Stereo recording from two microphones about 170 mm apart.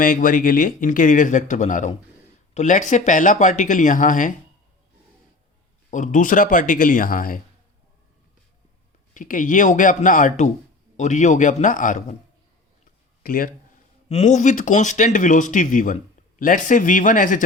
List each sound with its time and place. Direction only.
0.0 s speech: 55° left (ahead or behind)
5.9 s speech: 45° left (ahead or behind)
9.1 s speech: 50° left (ahead or behind)
13.2 s speech: 55° left (ahead or behind)
14.1 s speech: 45° left (ahead or behind)